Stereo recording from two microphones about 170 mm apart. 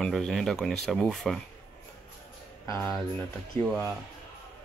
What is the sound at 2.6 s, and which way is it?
Speech, 15° left (ahead or behind).